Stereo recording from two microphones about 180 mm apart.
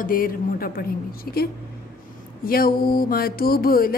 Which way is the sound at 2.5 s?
55° left (ahead or behind).